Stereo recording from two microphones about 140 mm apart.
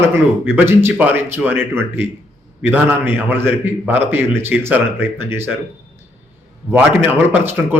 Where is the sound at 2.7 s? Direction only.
15° right (ahead or behind).